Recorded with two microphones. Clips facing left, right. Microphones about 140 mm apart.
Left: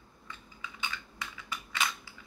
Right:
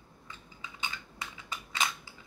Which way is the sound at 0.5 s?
25° right (ahead or behind).